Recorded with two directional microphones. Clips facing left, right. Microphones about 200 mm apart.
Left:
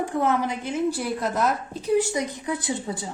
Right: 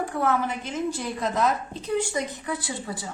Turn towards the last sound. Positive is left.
turn(degrees=20)  # may be behind; listen again after turning